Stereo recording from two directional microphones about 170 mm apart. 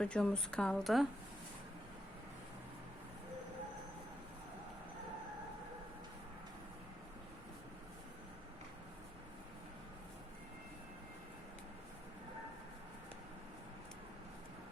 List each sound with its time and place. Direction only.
0.0 s a woman's voice: 5° left (ahead or behind)